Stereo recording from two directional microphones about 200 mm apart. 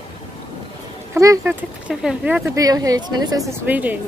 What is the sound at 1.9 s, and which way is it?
Speech, 5° right (ahead or behind).